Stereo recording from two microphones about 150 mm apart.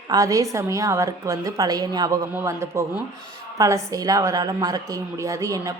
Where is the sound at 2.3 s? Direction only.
15° right (ahead or behind).